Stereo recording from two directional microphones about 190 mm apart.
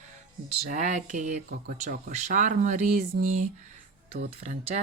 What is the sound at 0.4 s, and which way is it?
Speech, 40° right (ahead or behind).